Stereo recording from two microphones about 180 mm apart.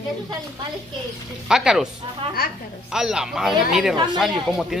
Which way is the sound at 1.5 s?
5° right (ahead or behind).